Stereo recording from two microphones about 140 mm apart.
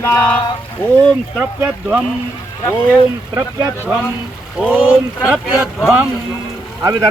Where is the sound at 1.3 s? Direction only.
10° right (ahead or behind).